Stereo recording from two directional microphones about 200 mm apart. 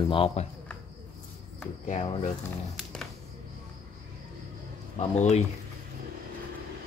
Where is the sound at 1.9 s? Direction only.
35° left (ahead or behind).